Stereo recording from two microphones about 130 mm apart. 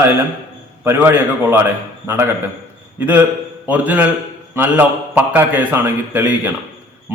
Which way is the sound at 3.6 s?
10° right (ahead or behind).